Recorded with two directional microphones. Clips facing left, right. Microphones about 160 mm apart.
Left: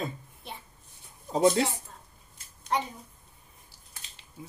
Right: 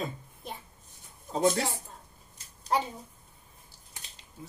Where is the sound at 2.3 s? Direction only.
35° right (ahead or behind).